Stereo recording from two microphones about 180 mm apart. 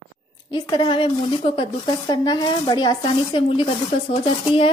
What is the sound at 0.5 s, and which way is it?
Speech, 25° left (ahead or behind).